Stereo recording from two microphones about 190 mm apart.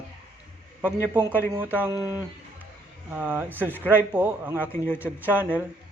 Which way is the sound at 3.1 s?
10° right (ahead or behind).